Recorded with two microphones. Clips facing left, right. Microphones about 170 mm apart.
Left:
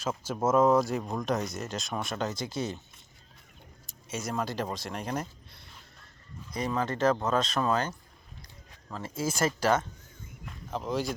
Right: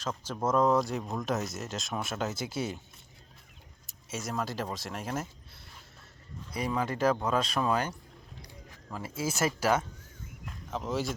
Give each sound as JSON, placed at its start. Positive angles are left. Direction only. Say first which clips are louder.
{"t": 0.0, "sound": "speech", "louder": "left 3 dB", "side_deg": 10}
{"t": 3.8, "sound": "speech", "louder": "left 2 dB", "side_deg": 0}
{"t": 6.5, "sound": "speech", "louder": "left 1 dB", "side_deg": -10}
{"t": 10.4, "sound": "a sound", "louder": "left 1 dB", "side_deg": 0}